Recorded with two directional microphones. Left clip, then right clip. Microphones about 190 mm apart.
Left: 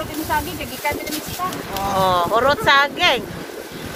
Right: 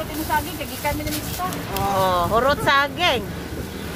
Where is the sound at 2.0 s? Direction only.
Centre (ahead or behind).